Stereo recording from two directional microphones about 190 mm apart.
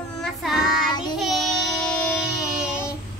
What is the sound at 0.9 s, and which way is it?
Child singing, 25° left (ahead or behind).